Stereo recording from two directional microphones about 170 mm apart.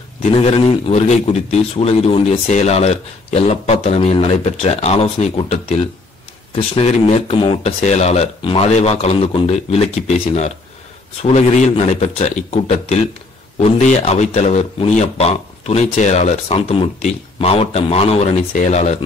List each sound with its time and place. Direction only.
0.2 s a man's voice: 35° left (ahead or behind)